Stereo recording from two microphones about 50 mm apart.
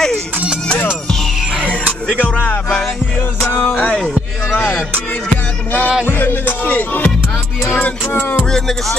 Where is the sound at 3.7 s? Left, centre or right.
Centre.